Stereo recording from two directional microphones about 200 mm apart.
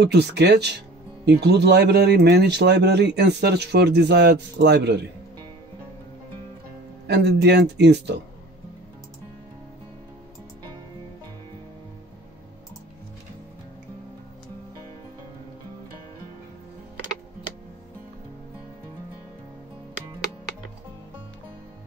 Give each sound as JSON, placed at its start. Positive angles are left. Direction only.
{"t": 0.0, "sound": "speech", "side_deg": -55}
{"t": 7.1, "sound": "speech", "side_deg": -55}